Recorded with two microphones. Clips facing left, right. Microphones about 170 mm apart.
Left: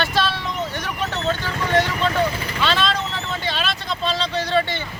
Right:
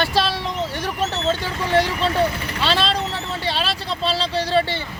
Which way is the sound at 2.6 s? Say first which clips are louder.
Right 1 dB; 35° right (ahead or behind).